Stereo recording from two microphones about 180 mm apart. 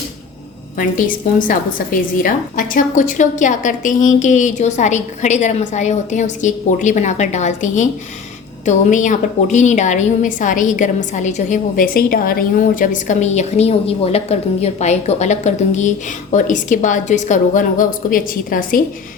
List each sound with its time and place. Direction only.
0.8 s a woman's voice: 50° left (ahead or behind)